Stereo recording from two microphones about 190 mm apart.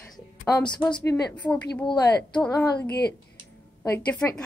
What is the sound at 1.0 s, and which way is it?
Speech, 15° left (ahead or behind).